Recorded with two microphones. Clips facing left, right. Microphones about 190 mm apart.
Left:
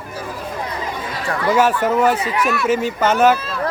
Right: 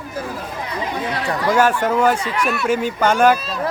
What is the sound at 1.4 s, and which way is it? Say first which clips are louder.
Speech: left 1 dB; 5° left (ahead or behind).